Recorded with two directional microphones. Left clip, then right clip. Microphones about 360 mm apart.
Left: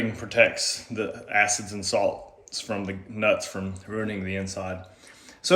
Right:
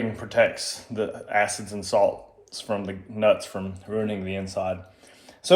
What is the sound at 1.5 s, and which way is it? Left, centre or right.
Speech, right.